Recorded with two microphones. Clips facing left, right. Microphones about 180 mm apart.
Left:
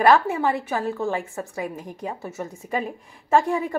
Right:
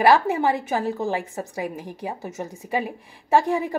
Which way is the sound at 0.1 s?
15° right (ahead or behind).